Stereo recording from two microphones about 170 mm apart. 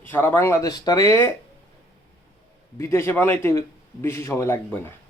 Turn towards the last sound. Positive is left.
turn(degrees=15)  # may be behind; listen again after turning